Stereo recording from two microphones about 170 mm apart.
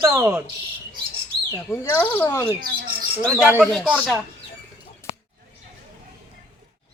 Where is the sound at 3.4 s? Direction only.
5° right (ahead or behind).